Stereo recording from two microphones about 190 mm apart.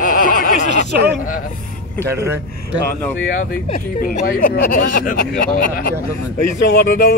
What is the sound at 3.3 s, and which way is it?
Speech, 45° left (ahead or behind).